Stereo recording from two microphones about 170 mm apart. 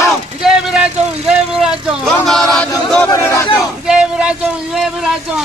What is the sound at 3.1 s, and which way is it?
Speech, 15° left (ahead or behind).